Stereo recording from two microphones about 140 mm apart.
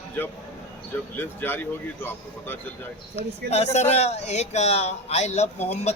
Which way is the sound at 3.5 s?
50° left (ahead or behind).